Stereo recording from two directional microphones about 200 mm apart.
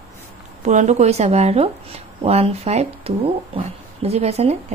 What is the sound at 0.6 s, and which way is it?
Speech, 35° right (ahead or behind).